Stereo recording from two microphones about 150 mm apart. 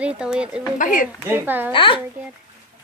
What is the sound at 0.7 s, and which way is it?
Speech, 60° left (ahead or behind).